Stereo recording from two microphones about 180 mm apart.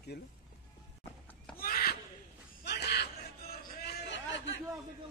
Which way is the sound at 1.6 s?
55° left (ahead or behind).